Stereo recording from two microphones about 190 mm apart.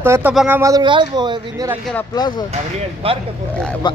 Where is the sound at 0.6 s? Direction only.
20° right (ahead or behind).